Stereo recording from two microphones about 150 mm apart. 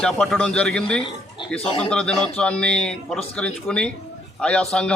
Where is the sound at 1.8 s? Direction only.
5° left (ahead or behind).